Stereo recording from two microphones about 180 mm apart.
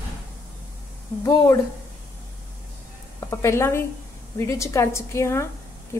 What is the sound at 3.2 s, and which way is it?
A woman's voice, 15° left (ahead or behind).